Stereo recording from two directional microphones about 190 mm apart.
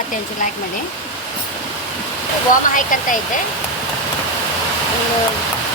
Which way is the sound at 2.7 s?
45° left (ahead or behind).